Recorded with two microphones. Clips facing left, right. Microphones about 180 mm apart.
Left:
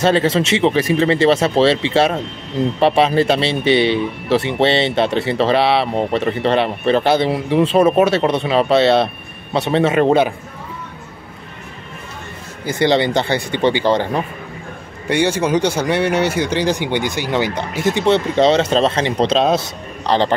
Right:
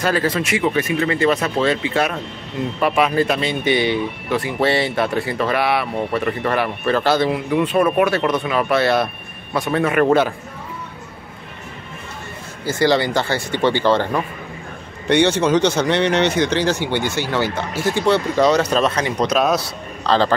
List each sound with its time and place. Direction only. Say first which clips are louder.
0.0 s speech: left 5 dB; 25° left (ahead or behind)
12.6 s speech: left 2 dB; 20° left (ahead or behind)